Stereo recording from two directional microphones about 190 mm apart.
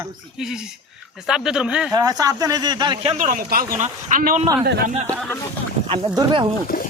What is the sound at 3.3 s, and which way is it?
Speech, 45° right (ahead or behind).